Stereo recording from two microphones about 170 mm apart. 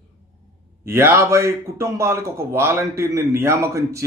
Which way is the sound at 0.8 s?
15° right (ahead or behind).